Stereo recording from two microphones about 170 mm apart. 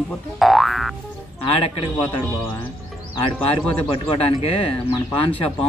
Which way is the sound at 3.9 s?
30° left (ahead or behind).